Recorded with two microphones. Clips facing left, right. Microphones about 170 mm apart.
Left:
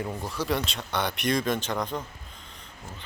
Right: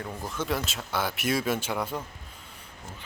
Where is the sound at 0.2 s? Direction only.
Centre (ahead or behind).